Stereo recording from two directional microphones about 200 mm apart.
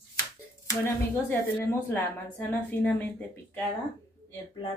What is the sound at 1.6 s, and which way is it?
Speech, 10° left (ahead or behind).